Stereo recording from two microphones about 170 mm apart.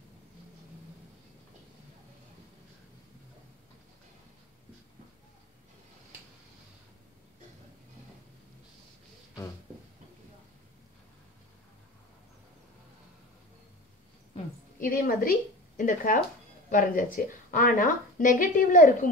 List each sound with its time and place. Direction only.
14.8 s a woman's voice: 55° left (ahead or behind)